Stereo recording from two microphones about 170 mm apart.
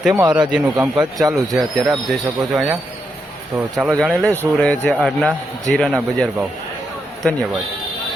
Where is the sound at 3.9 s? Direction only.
5° left (ahead or behind).